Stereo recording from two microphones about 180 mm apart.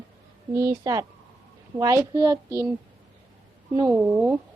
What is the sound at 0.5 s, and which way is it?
Speech, 15° right (ahead or behind).